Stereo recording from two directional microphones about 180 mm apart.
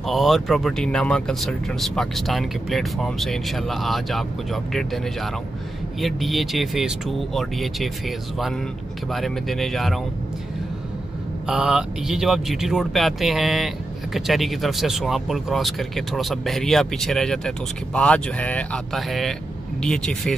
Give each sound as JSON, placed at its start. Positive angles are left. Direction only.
{"t": 0.0, "sound": "speech", "side_deg": 0}
{"t": 9.1, "sound": "speech", "side_deg": 0}
{"t": 11.4, "sound": "speech", "side_deg": -5}